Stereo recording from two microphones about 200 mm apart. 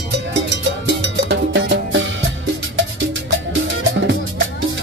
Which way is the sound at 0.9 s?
65° right (ahead or behind).